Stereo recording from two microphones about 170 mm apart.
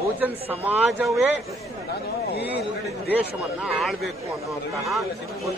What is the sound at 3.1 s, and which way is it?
A man's voice, 5° right (ahead or behind).